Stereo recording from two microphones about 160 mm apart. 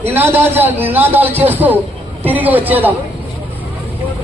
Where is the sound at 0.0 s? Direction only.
10° right (ahead or behind).